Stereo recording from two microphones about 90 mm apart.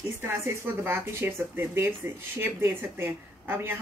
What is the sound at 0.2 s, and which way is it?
Speech, 30° right (ahead or behind).